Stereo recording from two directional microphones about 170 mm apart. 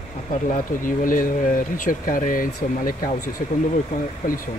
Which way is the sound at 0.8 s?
55° left (ahead or behind).